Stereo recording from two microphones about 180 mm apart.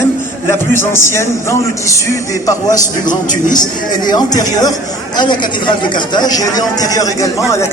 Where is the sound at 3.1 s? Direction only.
45° left (ahead or behind).